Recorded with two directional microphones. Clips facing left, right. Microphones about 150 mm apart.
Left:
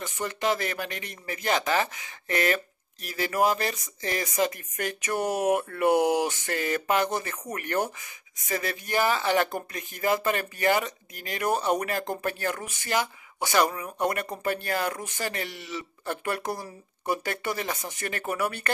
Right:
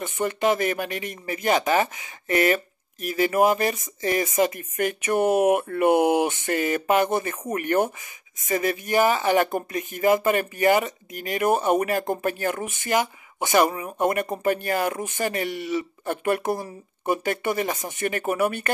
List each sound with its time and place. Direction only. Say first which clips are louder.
0.0 s speech: right 6 dB; 20° right (ahead or behind)